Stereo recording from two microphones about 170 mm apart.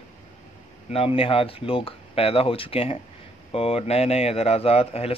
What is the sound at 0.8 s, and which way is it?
A man's voice, 35° left (ahead or behind).